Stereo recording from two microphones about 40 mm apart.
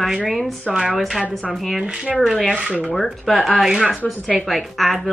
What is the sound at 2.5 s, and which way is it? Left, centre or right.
Speech, right.